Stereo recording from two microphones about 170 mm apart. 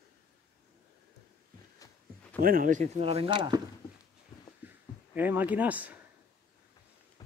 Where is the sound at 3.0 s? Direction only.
35° right (ahead or behind).